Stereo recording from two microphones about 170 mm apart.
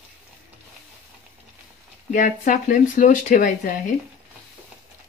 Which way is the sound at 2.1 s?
50° left (ahead or behind).